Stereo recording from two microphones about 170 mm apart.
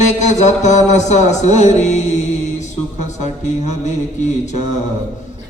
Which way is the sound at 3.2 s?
45° left (ahead or behind).